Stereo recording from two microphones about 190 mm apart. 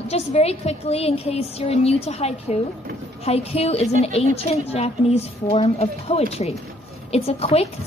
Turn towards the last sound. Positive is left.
turn(degrees=30)  # may be behind; listen again after turning